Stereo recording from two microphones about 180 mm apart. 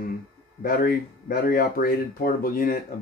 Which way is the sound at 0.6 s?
55° left (ahead or behind).